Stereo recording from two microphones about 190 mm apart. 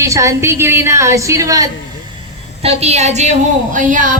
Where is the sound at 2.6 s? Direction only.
30° right (ahead or behind).